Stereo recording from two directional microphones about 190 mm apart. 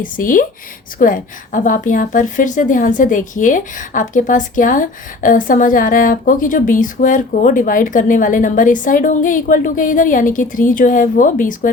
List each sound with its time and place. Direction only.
0.0 s a woman's voice: 45° left (ahead or behind)